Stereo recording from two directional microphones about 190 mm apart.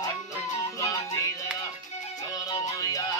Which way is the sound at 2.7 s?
20° left (ahead or behind).